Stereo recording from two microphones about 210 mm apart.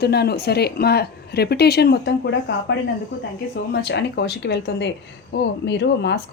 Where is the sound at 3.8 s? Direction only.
50° left (ahead or behind).